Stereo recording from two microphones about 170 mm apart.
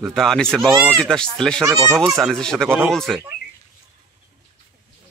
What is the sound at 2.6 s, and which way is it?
Speech, 10° right (ahead or behind).